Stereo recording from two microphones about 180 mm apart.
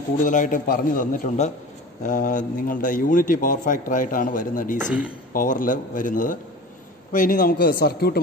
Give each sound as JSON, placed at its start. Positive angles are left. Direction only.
{"t": 0.2, "sound": "a man's voice", "side_deg": 45}
{"t": 4.8, "sound": "speech", "side_deg": -5}
{"t": 5.3, "sound": "a man's voice", "side_deg": 50}